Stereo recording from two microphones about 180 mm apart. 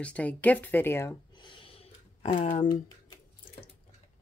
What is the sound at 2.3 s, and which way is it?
Speech, 45° left (ahead or behind).